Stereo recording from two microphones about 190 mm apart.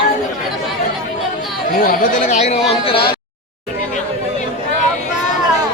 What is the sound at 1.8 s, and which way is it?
Speech, 45° left (ahead or behind).